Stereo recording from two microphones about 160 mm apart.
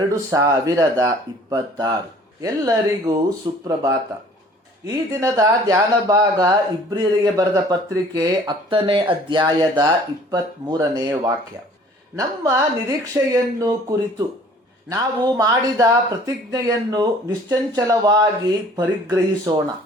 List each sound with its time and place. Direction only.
0.3 s speech: 20° right (ahead or behind)
5.2 s speech: 20° right (ahead or behind)
12.1 s speech: 20° right (ahead or behind)
18.8 s speech: 10° right (ahead or behind)
19.5 s speech: 25° right (ahead or behind)